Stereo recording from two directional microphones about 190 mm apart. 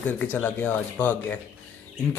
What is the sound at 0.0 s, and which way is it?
Speech, 10° left (ahead or behind).